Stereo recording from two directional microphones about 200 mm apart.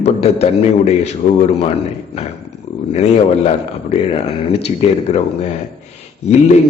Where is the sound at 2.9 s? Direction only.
30° left (ahead or behind).